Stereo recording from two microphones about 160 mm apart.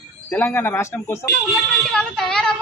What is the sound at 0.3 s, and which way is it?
Speech, 10° left (ahead or behind).